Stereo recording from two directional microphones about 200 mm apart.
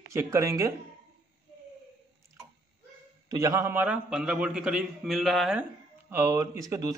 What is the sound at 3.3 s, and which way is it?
A man's voice, 15° right (ahead or behind).